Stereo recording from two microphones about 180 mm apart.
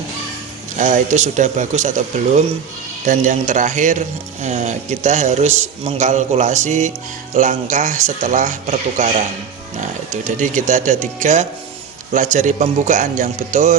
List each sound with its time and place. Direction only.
0.8 s a man's voice: 45° right (ahead or behind)